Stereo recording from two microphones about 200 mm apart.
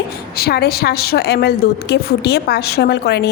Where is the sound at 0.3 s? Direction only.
50° left (ahead or behind).